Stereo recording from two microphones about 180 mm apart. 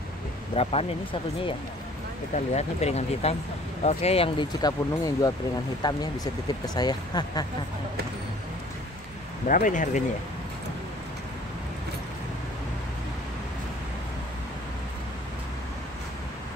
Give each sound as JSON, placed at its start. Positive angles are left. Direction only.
{"t": 0.6, "sound": "speech", "side_deg": 30}
{"t": 2.3, "sound": "speech", "side_deg": 40}
{"t": 9.5, "sound": "speech", "side_deg": 45}